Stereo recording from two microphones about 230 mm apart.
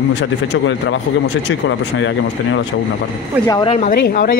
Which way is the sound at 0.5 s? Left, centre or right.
Left.